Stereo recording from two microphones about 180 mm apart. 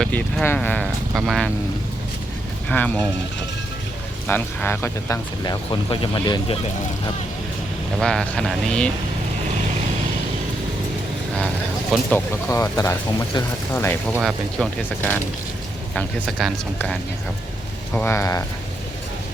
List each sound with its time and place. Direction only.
0.0 s speech: 5° left (ahead or behind)
2.6 s speech: 5° left (ahead or behind)
4.3 s speech: 10° left (ahead or behind)
7.9 s speech: 5° left (ahead or behind)
11.3 s speech: 5° left (ahead or behind)
14.1 s speech: 5° right (ahead or behind)
16.0 s speech: 5° left (ahead or behind)